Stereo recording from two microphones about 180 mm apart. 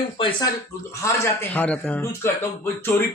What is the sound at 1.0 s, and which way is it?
A man's voice, 15° left (ahead or behind).